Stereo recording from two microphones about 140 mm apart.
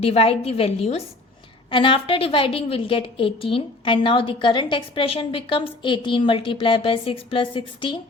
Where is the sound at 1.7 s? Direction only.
35° left (ahead or behind).